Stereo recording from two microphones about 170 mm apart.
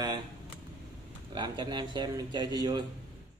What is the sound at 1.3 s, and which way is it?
Speech, 25° right (ahead or behind).